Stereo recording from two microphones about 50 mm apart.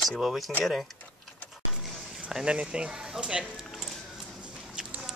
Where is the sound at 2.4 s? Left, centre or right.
Centre.